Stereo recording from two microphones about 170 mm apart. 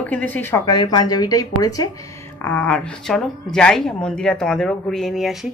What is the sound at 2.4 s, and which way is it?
A woman's voice, 10° left (ahead or behind).